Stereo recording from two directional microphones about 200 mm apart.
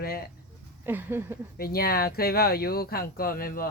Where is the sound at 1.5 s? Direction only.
50° left (ahead or behind).